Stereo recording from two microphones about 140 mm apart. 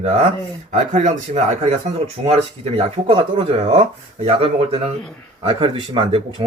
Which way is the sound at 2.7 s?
45° right (ahead or behind).